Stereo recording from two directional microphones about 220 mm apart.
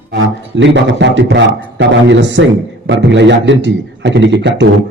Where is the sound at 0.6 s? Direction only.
55° right (ahead or behind).